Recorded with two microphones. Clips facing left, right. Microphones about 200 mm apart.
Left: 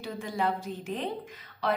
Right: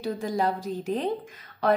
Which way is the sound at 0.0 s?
40° right (ahead or behind).